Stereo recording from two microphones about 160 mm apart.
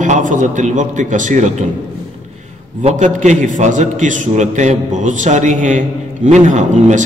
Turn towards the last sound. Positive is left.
turn(degrees=-45)  # may be behind; listen again after turning